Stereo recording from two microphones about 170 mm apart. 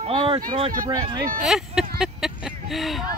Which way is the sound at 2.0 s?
5° right (ahead or behind).